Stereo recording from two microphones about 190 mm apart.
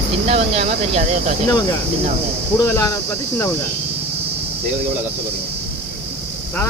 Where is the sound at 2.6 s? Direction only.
15° left (ahead or behind).